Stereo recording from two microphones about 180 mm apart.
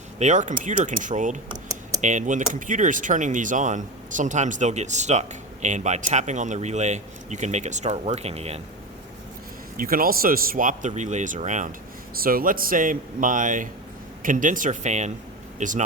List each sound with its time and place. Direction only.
0.2 s speech: 45° right (ahead or behind)
9.7 s speech: 55° right (ahead or behind)
12.1 s speech: 55° right (ahead or behind)